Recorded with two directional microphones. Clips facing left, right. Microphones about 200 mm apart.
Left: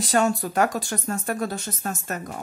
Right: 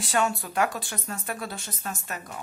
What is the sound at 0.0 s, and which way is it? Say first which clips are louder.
Speech: left 5 dB; 40° left (ahead or behind).